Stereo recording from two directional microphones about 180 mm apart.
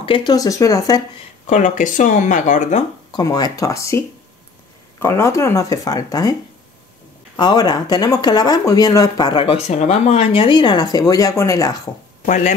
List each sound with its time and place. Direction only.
0.0 s speech: 25° left (ahead or behind)
1.5 s speech: 45° left (ahead or behind)
3.1 s speech: 20° left (ahead or behind)
5.0 s speech: 15° left (ahead or behind)
7.3 s speech: 25° left (ahead or behind)
9.7 s speech: 40° left (ahead or behind); by 11.9 s 20° left (ahead or behind)
12.3 s speech: 45° left (ahead or behind)